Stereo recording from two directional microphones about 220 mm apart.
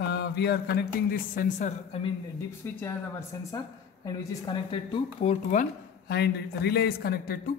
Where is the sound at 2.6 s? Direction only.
10° left (ahead or behind).